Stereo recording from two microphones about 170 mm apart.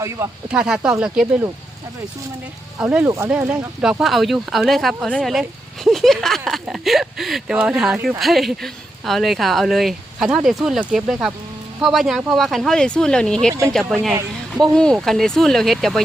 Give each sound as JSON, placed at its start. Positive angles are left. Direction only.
{"t": 0.0, "sound": "speech", "side_deg": -15}
{"t": 0.5, "sound": "speech", "side_deg": -5}
{"t": 2.7, "sound": "speech", "side_deg": -10}
{"t": 13.5, "sound": "speech", "side_deg": -20}
{"t": 14.6, "sound": "speech", "side_deg": 5}